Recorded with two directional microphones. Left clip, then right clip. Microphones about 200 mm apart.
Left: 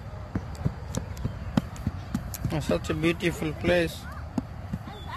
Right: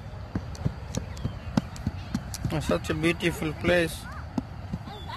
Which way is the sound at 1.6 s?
Centre (ahead or behind).